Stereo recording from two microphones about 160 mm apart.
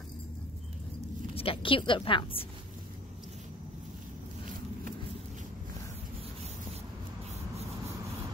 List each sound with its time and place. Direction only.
1.3 s a woman's voice: 35° left (ahead or behind)